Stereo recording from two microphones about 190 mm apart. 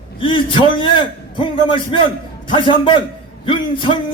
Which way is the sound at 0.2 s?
25° left (ahead or behind).